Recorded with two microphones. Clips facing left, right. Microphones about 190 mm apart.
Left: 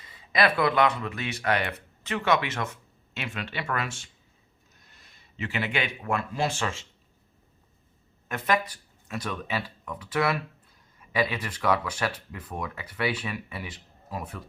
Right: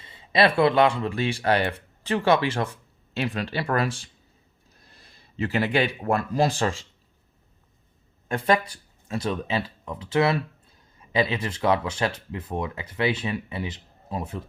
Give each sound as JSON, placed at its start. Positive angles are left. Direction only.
{"t": 0.0, "sound": "speech", "side_deg": -25}
{"t": 8.3, "sound": "speech", "side_deg": -30}